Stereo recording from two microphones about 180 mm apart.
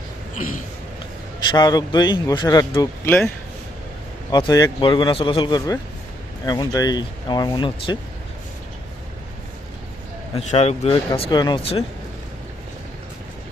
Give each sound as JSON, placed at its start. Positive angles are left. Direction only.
{"t": 1.5, "sound": "speech", "side_deg": 25}
{"t": 4.3, "sound": "speech", "side_deg": 25}
{"t": 10.3, "sound": "a man's voice", "side_deg": 35}
{"t": 11.2, "sound": "speech", "side_deg": 20}